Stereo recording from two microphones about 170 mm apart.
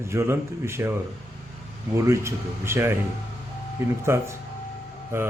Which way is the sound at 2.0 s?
15° right (ahead or behind).